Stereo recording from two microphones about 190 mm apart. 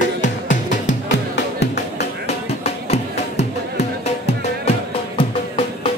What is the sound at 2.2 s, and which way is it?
Music, 35° left (ahead or behind).